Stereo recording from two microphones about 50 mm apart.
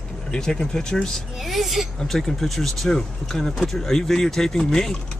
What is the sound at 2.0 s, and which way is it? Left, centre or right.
Speech, centre.